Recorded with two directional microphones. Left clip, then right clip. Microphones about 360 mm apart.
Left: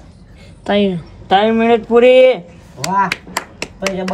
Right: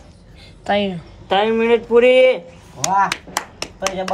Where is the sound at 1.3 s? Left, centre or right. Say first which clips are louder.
Left 3 dB; left.